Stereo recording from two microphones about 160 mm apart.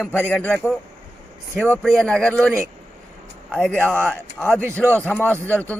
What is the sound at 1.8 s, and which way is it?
Speech, centre (ahead or behind).